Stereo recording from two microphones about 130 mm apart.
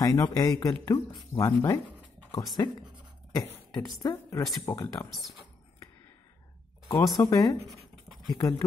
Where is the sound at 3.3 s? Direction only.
25° left (ahead or behind).